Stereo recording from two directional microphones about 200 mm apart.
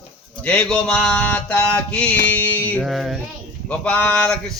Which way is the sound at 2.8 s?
Centre (ahead or behind).